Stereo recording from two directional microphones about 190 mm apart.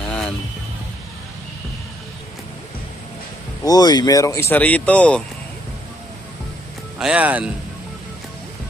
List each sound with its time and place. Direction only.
3.6 s speech: 20° left (ahead or behind)
7.0 s speech: 5° right (ahead or behind)